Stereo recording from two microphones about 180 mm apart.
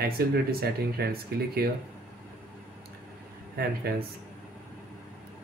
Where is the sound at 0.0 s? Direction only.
60° right (ahead or behind).